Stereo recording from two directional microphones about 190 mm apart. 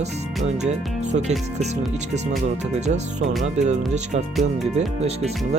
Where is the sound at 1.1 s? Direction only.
35° right (ahead or behind).